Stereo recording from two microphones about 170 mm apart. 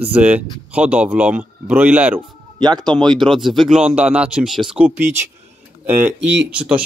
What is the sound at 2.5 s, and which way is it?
Speech, 25° right (ahead or behind).